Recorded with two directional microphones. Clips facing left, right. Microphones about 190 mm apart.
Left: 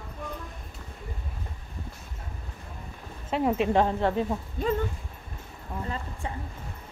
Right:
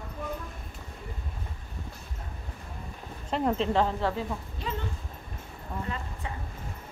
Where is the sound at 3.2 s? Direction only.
5° left (ahead or behind).